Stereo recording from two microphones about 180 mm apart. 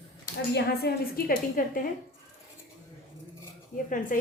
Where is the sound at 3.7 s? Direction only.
50° left (ahead or behind).